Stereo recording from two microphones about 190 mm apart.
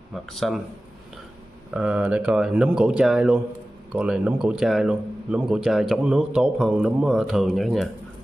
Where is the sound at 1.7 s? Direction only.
5° right (ahead or behind).